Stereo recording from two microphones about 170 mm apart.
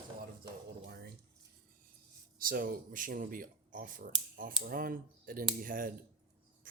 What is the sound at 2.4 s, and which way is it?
Speech, 55° right (ahead or behind).